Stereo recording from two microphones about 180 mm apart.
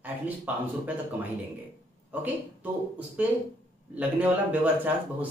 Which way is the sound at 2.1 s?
10° right (ahead or behind).